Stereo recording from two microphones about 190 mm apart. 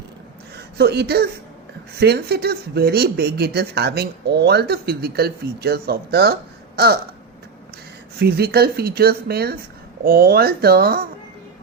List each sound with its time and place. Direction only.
0.5 s speech: 60° right (ahead or behind)
8.2 s speech: 55° right (ahead or behind)